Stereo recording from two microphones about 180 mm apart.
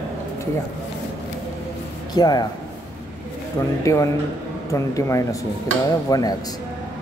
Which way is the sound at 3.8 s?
15° left (ahead or behind).